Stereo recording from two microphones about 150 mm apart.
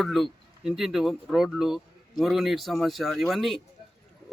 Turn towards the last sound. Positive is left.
turn(degrees=0)  # may be behind; listen again after turning